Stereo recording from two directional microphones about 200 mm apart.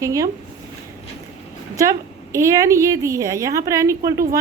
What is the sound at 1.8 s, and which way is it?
A woman's voice, 15° right (ahead or behind).